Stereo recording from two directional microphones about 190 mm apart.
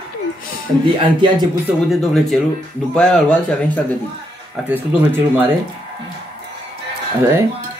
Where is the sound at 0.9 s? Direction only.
25° right (ahead or behind).